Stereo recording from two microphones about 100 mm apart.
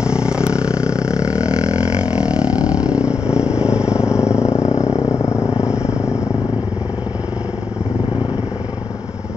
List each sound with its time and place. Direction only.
0.0 s a sound: 10° right (ahead or behind)
2.1 s vehicle: 10° right (ahead or behind)
4.3 s vehicle: 30° left (ahead or behind)